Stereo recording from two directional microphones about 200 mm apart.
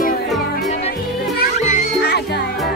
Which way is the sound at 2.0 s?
55° left (ahead or behind).